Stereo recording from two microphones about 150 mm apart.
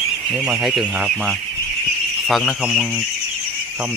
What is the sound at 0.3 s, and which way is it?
Speech, 5° right (ahead or behind).